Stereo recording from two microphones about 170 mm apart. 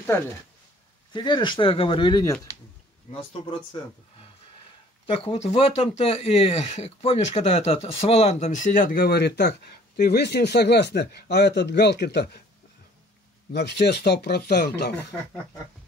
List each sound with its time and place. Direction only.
1.1 s speech: 25° left (ahead or behind)
5.0 s speech: 35° left (ahead or behind); by 12.3 s 75° left (ahead or behind)
13.5 s speech: 70° left (ahead or behind)